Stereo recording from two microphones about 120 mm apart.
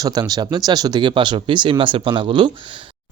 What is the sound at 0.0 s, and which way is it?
Speech, 35° right (ahead or behind).